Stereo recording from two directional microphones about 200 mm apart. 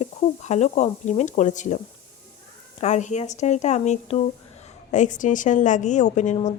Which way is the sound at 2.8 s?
35° left (ahead or behind).